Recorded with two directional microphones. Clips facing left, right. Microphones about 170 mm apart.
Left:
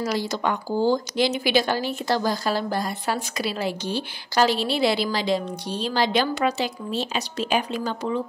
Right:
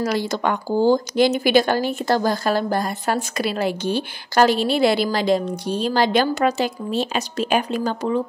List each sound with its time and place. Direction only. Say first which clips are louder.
0.0 s speech: right 3 dB; 60° right (ahead or behind)